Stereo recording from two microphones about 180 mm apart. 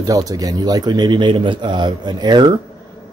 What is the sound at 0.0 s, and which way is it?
A man's voice, 20° right (ahead or behind).